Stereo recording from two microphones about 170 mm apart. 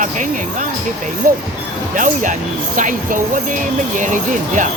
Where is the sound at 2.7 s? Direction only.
50° right (ahead or behind).